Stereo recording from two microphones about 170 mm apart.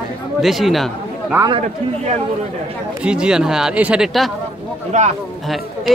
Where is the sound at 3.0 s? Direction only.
5° right (ahead or behind).